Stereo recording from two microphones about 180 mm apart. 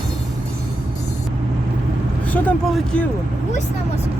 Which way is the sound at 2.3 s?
10° left (ahead or behind).